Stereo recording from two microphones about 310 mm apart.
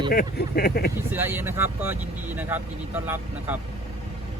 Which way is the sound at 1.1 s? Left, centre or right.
Centre.